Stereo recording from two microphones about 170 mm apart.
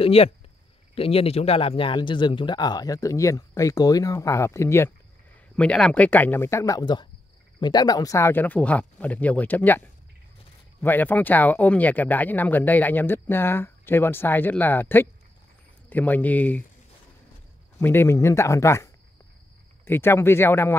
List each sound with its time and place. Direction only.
0.0 s a man's voice: 35° left (ahead or behind); by 16.6 s 10° left (ahead or behind)
17.7 s speech: 15° left (ahead or behind)